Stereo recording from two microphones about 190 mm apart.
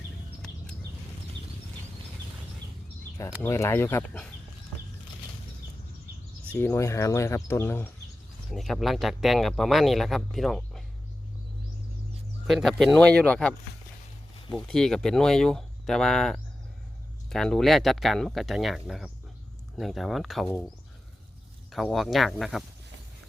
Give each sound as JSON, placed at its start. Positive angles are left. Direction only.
{"t": 3.4, "sound": "speech", "side_deg": 15}
{"t": 6.5, "sound": "speech", "side_deg": 10}
{"t": 8.4, "sound": "speech", "side_deg": 0}
{"t": 12.5, "sound": "speech", "side_deg": 0}
{"t": 21.7, "sound": "speech", "side_deg": 0}